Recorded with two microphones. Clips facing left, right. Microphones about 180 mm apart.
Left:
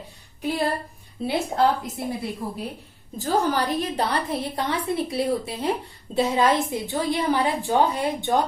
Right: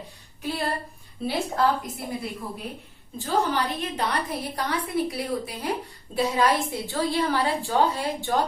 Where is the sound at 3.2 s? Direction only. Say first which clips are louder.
Left 2 dB; 40° left (ahead or behind); by 8.4 s 20° left (ahead or behind).